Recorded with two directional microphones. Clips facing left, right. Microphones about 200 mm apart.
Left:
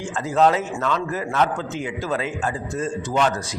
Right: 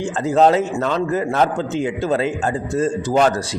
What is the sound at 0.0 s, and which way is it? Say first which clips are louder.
A man's voice: right 4 dB; 30° right (ahead or behind).